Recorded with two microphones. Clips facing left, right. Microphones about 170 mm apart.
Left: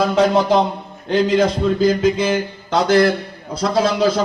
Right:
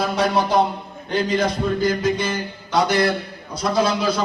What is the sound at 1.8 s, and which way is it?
Mantra, 90° left.